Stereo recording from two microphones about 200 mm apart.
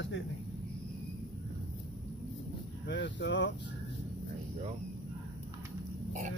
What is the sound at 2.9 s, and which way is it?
Speech, 65° left (ahead or behind).